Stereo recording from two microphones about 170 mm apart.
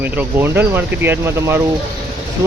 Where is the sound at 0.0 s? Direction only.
10° right (ahead or behind).